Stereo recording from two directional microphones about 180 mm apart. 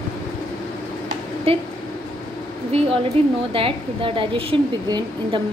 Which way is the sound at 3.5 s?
30° right (ahead or behind).